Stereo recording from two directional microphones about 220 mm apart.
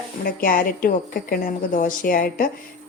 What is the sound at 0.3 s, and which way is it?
A woman's voice, 40° left (ahead or behind).